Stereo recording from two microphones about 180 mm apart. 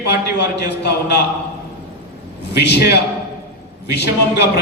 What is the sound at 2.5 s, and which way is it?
A man's voice, 70° left (ahead or behind).